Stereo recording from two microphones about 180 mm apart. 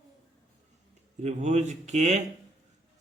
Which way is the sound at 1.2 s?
40° right (ahead or behind).